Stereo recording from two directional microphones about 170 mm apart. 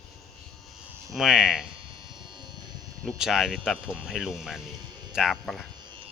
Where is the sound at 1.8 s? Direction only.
30° right (ahead or behind).